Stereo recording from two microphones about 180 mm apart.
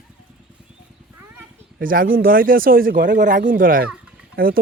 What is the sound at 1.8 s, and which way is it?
Speech, 50° right (ahead or behind).